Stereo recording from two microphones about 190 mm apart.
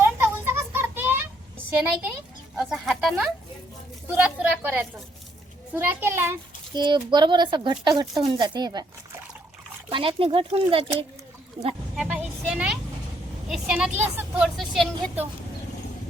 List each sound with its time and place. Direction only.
0.0 s a sound: 10° right (ahead or behind)
1.7 s a woman's voice: 10° right (ahead or behind)
6.7 s speech: 25° right (ahead or behind)
9.9 s speech: 30° right (ahead or behind)
11.9 s a woman's voice: 5° right (ahead or behind)